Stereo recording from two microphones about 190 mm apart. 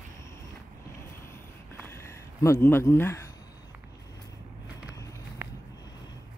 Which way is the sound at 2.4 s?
15° left (ahead or behind).